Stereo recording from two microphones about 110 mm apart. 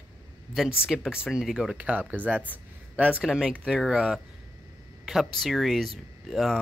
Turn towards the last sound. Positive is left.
turn(degrees=0)  # may be behind; listen again after turning